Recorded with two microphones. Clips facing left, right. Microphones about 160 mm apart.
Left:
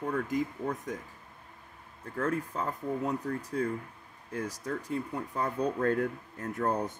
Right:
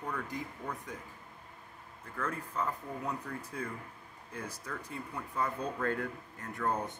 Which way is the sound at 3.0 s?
40° left (ahead or behind).